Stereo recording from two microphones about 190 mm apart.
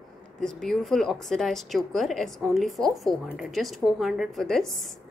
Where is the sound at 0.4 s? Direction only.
Centre (ahead or behind).